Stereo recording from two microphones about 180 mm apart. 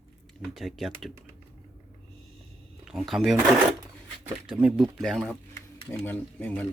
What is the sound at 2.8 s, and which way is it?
Speech, 5° right (ahead or behind).